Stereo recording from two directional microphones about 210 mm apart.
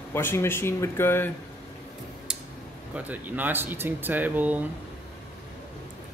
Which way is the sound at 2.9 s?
5° right (ahead or behind).